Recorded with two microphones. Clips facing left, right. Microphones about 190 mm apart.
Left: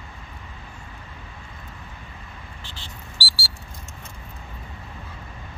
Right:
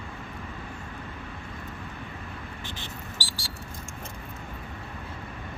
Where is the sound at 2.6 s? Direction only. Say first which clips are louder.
Right 3 dB; 15° right (ahead or behind).